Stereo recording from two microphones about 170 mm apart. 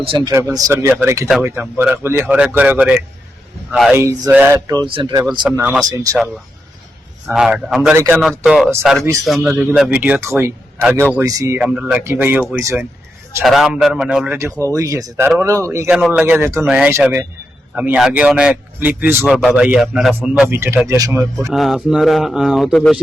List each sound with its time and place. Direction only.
0.0 s speech: 30° right (ahead or behind)
0.3 s speech: 15° right (ahead or behind)
5.5 s speech: 15° right (ahead or behind)
6.1 s speech: centre (ahead or behind)
7.8 s speech: 15° right (ahead or behind)
8.2 s speech: 5° right (ahead or behind)
13.4 s speech: centre (ahead or behind)
14.7 s speech: 20° right (ahead or behind)
15.9 s speech: 5° right (ahead or behind)
21.5 s speech: centre (ahead or behind)